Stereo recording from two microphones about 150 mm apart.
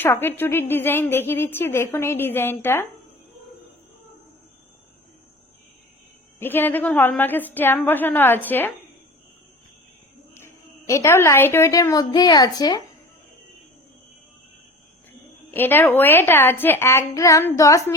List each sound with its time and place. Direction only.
0.0 s a woman's voice: 15° left (ahead or behind)
6.4 s a woman's voice: 15° left (ahead or behind)
10.3 s a woman's voice: 15° left (ahead or behind)
15.5 s a woman's voice: 15° left (ahead or behind)